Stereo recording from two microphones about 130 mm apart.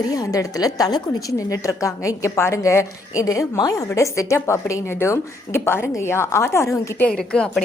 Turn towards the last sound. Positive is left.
turn(degrees=5)  # may be behind; listen again after turning